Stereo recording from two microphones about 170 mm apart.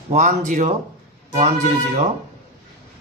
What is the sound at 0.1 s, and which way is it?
Speech, 45° right (ahead or behind).